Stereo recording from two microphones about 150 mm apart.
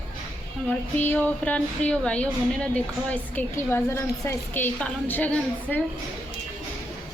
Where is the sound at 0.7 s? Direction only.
10° left (ahead or behind).